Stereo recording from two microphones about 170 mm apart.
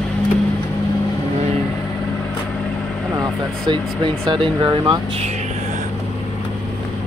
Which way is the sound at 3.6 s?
25° right (ahead or behind).